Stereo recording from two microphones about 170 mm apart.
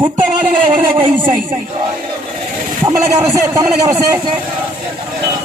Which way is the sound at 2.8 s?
15° right (ahead or behind).